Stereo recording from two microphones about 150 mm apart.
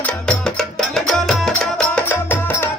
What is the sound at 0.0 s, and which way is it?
Music, 5° left (ahead or behind).